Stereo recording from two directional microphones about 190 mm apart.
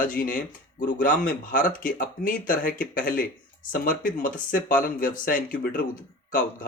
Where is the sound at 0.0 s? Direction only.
45° left (ahead or behind).